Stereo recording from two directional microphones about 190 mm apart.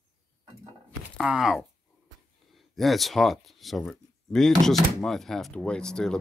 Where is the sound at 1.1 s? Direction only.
5° right (ahead or behind).